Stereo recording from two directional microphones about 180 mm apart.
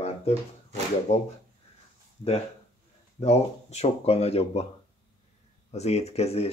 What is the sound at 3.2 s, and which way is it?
Speech, 35° left (ahead or behind).